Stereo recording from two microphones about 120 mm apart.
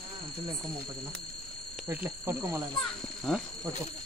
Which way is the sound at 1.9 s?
20° right (ahead or behind).